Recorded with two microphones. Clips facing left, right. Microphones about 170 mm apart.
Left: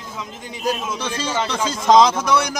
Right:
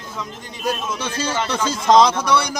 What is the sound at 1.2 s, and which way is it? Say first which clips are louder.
Speech: left 1 dB; 15° left (ahead or behind).